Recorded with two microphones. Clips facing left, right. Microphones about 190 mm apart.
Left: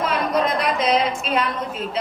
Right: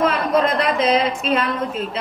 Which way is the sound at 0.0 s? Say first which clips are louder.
Right 3 dB; centre (ahead or behind).